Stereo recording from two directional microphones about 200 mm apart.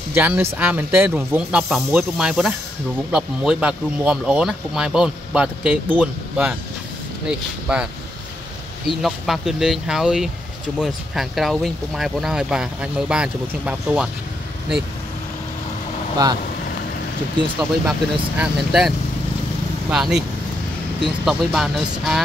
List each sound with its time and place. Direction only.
0.1 s speech: 10° right (ahead or behind)
16.2 s speech: 20° right (ahead or behind)
18.4 s speech: 5° right (ahead or behind)
21.3 s speech: centre (ahead or behind)